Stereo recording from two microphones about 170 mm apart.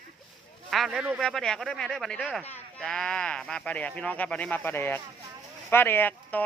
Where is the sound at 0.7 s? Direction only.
Centre (ahead or behind).